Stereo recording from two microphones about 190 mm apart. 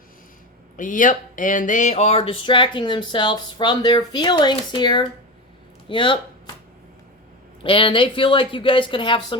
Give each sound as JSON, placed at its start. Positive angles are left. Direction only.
{"t": 0.8, "sound": "speech", "side_deg": 45}
{"t": 7.6, "sound": "speech", "side_deg": 25}